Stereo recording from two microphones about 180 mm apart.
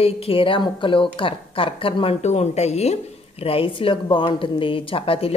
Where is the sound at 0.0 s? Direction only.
30° left (ahead or behind).